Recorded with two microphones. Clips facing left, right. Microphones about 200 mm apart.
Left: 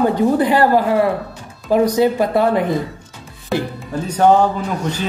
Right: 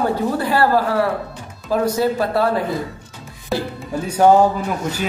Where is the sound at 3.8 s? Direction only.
10° right (ahead or behind).